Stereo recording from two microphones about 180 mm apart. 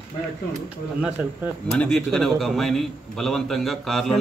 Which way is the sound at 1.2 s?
10° right (ahead or behind).